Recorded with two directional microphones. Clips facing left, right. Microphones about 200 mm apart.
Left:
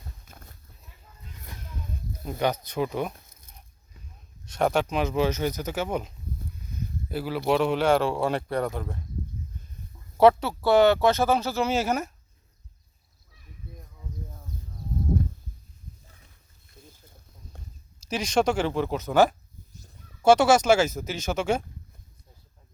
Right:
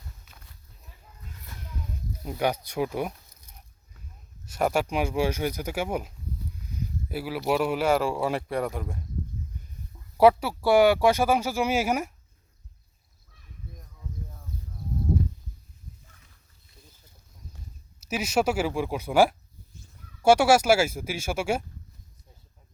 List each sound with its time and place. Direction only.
0.3 s a sound: 50° left (ahead or behind)
2.2 s speech: 10° right (ahead or behind)
4.4 s speech: 5° right (ahead or behind)
10.2 s speech: 10° right (ahead or behind)
18.1 s speech: 5° right (ahead or behind)